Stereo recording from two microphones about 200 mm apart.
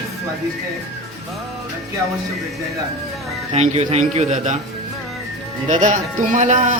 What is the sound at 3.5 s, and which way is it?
A man's voice, 30° right (ahead or behind).